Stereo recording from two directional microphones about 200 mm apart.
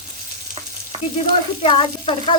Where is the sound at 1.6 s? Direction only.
25° left (ahead or behind).